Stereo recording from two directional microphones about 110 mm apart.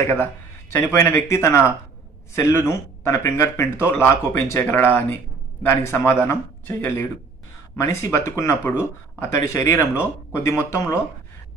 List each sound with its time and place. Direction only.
0.0 s speech: 20° left (ahead or behind)